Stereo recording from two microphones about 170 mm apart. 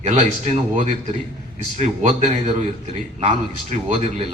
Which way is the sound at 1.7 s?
45° right (ahead or behind).